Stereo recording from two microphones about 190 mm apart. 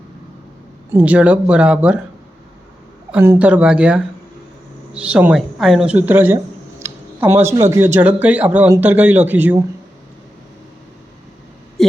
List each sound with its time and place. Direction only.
0.9 s speech: 10° right (ahead or behind)
3.1 s speech: 10° right (ahead or behind)